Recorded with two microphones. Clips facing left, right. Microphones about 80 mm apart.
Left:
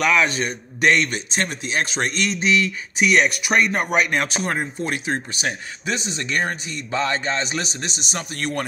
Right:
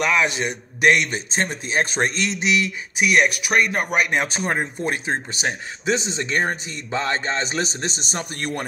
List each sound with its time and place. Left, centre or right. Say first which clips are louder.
0.0 s speech: left 1 dB; centre
1.1 s speech: right 1 dB; right; by 4.1 s centre
4.1 s a man's voice: even; right
4.6 s speech: right 1 dB; right